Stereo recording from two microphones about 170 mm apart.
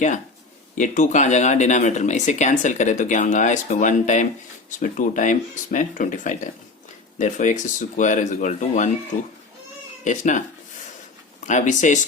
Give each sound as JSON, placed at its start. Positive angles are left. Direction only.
{"t": 0.8, "sound": "speech", "side_deg": 45}
{"t": 10.0, "sound": "speech", "side_deg": 45}
{"t": 11.4, "sound": "speech", "side_deg": 45}